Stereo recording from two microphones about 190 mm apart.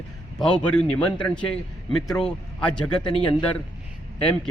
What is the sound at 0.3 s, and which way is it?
Speech, 5° left (ahead or behind).